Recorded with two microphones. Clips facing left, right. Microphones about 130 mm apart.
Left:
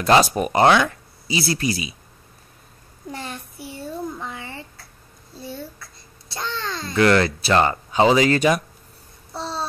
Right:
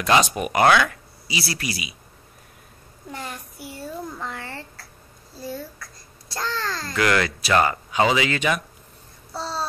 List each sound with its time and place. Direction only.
0.0 s speech: 35° left (ahead or behind)
3.1 s a sound: 25° left (ahead or behind)
4.2 s a sound: 15° left (ahead or behind)
6.3 s a child's voice: 20° left (ahead or behind)
8.1 s speech: 40° left (ahead or behind)
9.3 s babbling: 25° left (ahead or behind)